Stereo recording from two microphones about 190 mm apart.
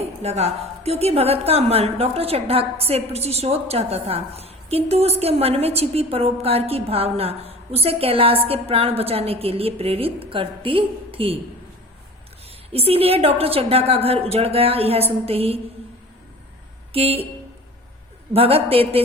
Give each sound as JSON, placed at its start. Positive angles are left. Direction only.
{"t": 0.0, "sound": "a woman's voice", "side_deg": -35}
{"t": 12.7, "sound": "a woman's voice", "side_deg": -30}
{"t": 16.9, "sound": "a woman's voice", "side_deg": -30}
{"t": 18.3, "sound": "a woman's voice", "side_deg": -30}